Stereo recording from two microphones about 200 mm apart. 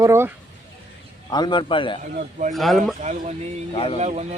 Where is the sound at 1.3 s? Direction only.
20° left (ahead or behind).